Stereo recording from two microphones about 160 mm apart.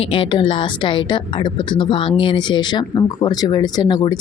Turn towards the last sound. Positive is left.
turn(degrees=25)  # may be behind; listen again after turning